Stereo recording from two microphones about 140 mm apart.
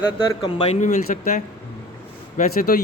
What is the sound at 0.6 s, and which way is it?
Speech, 75° left (ahead or behind).